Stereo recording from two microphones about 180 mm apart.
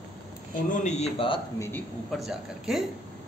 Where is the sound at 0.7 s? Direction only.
40° left (ahead or behind).